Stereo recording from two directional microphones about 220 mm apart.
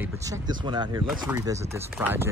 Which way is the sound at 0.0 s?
15° right (ahead or behind).